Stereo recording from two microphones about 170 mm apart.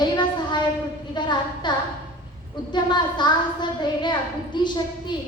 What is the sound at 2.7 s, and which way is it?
A woman's voice, 25° left (ahead or behind).